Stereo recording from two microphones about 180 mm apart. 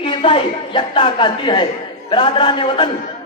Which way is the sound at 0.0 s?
30° left (ahead or behind).